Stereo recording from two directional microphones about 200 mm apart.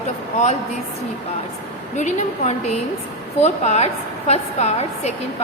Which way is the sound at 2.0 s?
35° left (ahead or behind).